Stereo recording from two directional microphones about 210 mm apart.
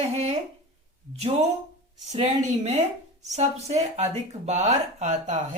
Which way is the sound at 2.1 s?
30° right (ahead or behind).